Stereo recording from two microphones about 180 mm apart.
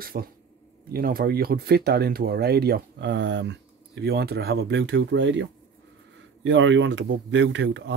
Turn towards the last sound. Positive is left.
turn(degrees=-80)